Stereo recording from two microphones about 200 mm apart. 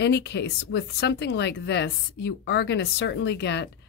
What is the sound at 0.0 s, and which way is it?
Speech, 60° left (ahead or behind).